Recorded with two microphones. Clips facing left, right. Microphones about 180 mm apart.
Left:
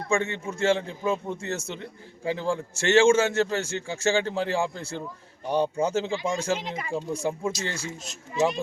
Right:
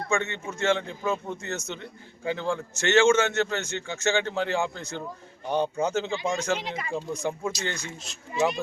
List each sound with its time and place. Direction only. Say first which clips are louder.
0.1 s a man's voice: left 3 dB; 30° left (ahead or behind)